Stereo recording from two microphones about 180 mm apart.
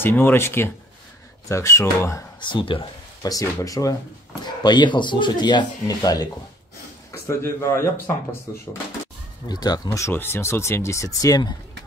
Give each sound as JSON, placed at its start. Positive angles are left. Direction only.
{"t": 0.0, "sound": "speech", "side_deg": 10}
{"t": 9.5, "sound": "speech", "side_deg": 20}